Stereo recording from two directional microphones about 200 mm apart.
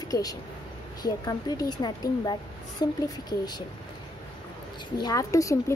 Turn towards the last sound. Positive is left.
turn(degrees=15)  # may be behind; listen again after turning